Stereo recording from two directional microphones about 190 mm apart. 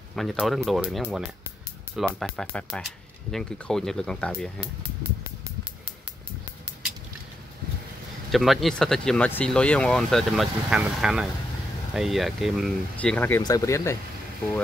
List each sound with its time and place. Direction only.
0.1 s speech: centre (ahead or behind)
8.3 s speech: centre (ahead or behind)